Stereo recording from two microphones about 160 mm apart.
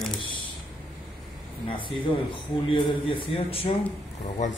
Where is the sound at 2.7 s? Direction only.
35° left (ahead or behind).